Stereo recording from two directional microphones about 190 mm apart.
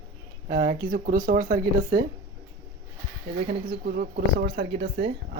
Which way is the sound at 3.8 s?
55° right (ahead or behind).